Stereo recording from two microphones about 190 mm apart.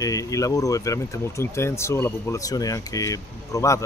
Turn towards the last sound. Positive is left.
turn(degrees=15)  # may be behind; listen again after turning